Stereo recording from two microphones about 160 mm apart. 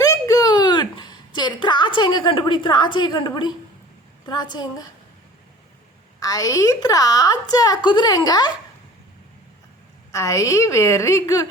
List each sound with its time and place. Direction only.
0.0 s a sound: 20° left (ahead or behind)
4.3 s a woman's voice: 25° left (ahead or behind)
6.1 s a woman's voice: 20° left (ahead or behind)
10.1 s a woman's voice: 20° left (ahead or behind)